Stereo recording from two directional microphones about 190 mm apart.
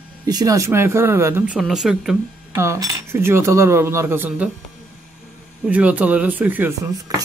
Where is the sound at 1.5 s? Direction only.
Centre (ahead or behind).